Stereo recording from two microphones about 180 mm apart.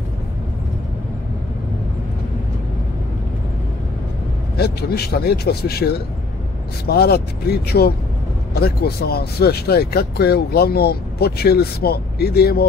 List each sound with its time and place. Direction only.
4.6 s speech: 60° left (ahead or behind)